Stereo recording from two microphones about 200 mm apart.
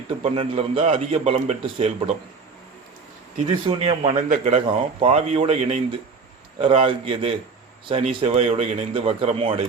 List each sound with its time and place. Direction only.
0.2 s a man's voice: 30° right (ahead or behind)
3.4 s a man's voice: 25° right (ahead or behind)